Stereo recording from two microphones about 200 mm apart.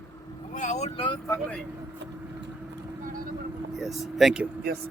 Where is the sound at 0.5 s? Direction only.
35° left (ahead or behind).